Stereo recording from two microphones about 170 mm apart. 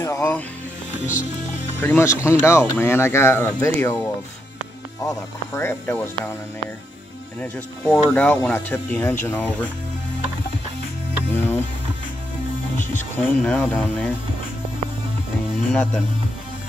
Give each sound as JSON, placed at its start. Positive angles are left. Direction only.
{"t": 0.0, "sound": "speech", "side_deg": 15}
{"t": 1.8, "sound": "speech", "side_deg": 15}
{"t": 7.9, "sound": "speech", "side_deg": 10}
{"t": 11.3, "sound": "music", "side_deg": 10}
{"t": 13.2, "sound": "speech", "side_deg": 10}
{"t": 15.7, "sound": "speech", "side_deg": 5}